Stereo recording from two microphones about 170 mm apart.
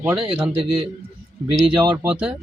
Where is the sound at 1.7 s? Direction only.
10° right (ahead or behind).